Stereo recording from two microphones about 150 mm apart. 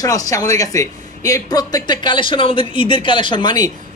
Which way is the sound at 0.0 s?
25° left (ahead or behind).